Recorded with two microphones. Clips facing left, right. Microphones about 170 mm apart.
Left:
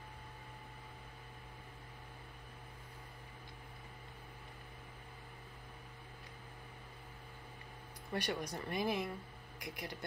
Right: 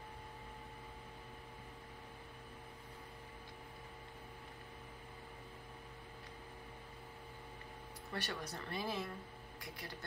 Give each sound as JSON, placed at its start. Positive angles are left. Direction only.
{"t": 8.1, "sound": "speech", "side_deg": 15}